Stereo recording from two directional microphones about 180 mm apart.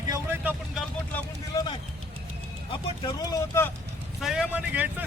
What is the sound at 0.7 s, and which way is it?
Vehicle, centre (ahead or behind).